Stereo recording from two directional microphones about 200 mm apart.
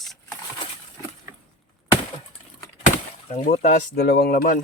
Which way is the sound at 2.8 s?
35° left (ahead or behind).